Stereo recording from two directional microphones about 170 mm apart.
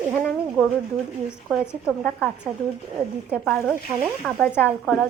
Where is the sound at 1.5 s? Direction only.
5° right (ahead or behind).